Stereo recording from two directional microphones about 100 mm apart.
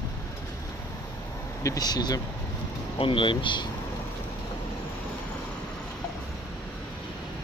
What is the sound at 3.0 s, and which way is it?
Speech, 60° left (ahead or behind).